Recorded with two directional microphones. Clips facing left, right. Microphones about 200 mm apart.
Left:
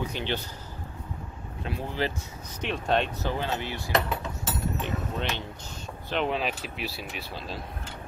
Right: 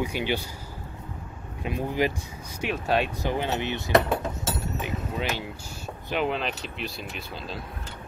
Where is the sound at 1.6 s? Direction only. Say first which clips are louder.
Right 4 dB; 15° right (ahead or behind).